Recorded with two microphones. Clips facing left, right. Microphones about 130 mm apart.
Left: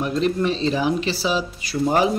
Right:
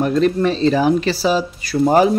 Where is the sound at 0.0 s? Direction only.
45° right (ahead or behind).